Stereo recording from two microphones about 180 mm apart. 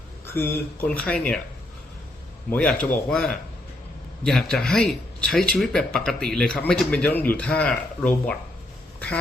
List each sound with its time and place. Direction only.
0.3 s speech: 10° left (ahead or behind)
2.5 s speech: 5° left (ahead or behind)